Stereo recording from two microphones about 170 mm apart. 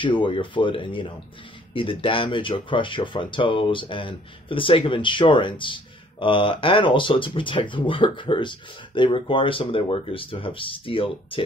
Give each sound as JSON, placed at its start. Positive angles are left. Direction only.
{"t": 0.0, "sound": "speech", "side_deg": 30}